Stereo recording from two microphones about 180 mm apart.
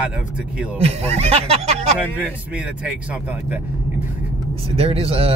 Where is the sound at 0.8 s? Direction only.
35° right (ahead or behind).